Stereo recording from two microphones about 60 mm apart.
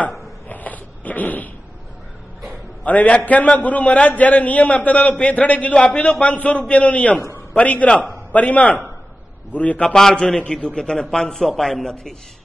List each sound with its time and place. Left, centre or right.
0.5 s zipper: left
2.8 s a man's voice: left; by 12.2 s centre